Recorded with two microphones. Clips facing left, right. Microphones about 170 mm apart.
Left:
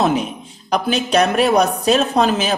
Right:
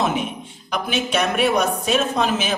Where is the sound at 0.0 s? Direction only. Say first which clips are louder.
Left 4 dB; 35° left (ahead or behind).